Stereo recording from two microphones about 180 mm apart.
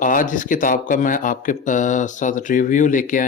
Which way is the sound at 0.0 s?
50° left (ahead or behind).